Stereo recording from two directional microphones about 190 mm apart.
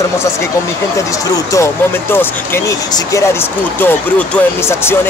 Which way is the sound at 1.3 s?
15° left (ahead or behind).